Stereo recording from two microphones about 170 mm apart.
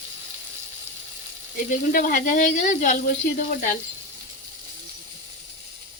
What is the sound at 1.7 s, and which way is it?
Speech, 50° left (ahead or behind).